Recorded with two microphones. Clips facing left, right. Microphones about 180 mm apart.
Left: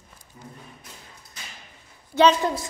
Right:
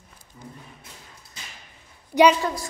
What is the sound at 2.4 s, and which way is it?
Speech, 20° left (ahead or behind).